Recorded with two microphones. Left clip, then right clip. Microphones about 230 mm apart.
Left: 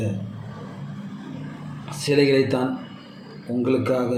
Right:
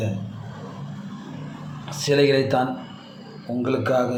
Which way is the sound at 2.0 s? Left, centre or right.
Right.